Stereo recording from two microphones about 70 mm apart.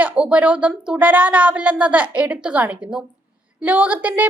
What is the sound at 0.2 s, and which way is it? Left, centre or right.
Speech, centre.